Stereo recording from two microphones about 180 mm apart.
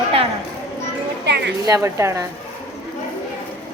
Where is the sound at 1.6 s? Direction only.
15° right (ahead or behind).